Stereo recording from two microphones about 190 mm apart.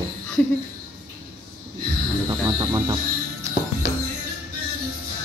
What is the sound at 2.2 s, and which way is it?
Speech, 20° right (ahead or behind).